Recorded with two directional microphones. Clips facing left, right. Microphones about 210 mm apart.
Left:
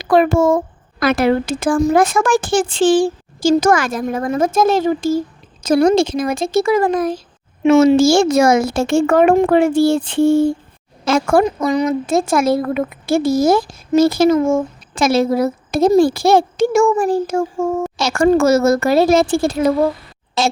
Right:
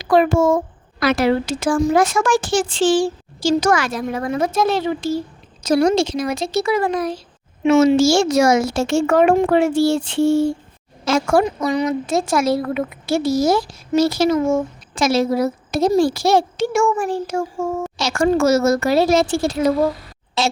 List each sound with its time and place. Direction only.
0.0 s a child's voice: 60° left (ahead or behind)